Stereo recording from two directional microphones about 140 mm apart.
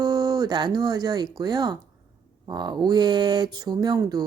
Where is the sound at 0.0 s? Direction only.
25° right (ahead or behind).